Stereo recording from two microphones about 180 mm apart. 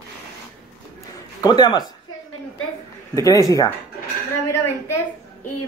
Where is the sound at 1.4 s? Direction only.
25° left (ahead or behind).